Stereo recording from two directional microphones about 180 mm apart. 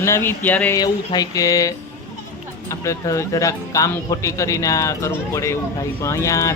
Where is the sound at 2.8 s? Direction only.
15° left (ahead or behind).